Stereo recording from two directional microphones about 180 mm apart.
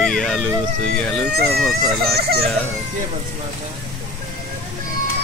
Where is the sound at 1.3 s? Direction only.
65° right (ahead or behind).